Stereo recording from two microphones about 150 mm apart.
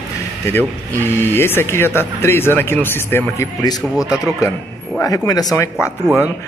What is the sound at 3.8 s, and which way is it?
Speech, 10° right (ahead or behind).